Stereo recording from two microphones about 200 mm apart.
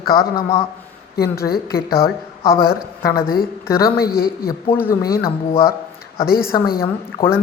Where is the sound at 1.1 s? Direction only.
50° left (ahead or behind).